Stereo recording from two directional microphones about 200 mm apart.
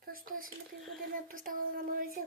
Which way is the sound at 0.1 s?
45° right (ahead or behind).